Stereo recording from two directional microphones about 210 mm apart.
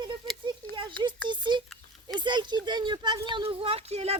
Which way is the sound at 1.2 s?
20° right (ahead or behind).